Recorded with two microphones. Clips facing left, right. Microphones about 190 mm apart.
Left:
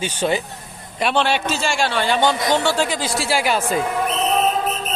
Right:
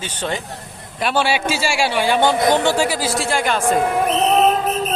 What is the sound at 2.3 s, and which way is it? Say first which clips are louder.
Speech: right 4 dB; 55° right (ahead or behind).